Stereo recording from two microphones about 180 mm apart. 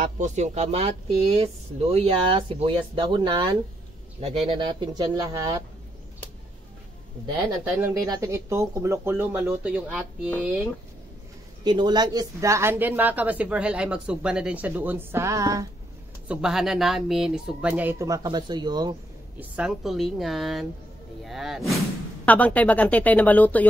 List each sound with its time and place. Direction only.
0.0 s speech: 40° right (ahead or behind); by 5.6 s 20° right (ahead or behind)
8.0 s speech: 20° right (ahead or behind)
11.6 s speech: 25° right (ahead or behind)
16.3 s speech: 5° right (ahead or behind); by 18.9 s 25° right (ahead or behind)
19.5 s a woman's voice: 5° right (ahead or behind)